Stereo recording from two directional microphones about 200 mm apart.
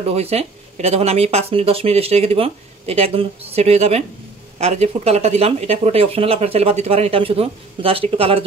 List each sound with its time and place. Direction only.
0.1 s speech: 30° right (ahead or behind)